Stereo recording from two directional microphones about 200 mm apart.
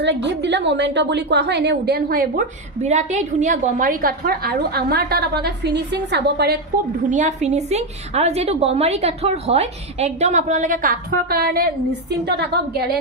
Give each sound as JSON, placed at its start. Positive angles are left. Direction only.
{"t": 0.0, "sound": "a woman's voice", "side_deg": -60}
{"t": 2.8, "sound": "a woman's voice", "side_deg": -35}
{"t": 7.1, "sound": "a woman's voice", "side_deg": -35}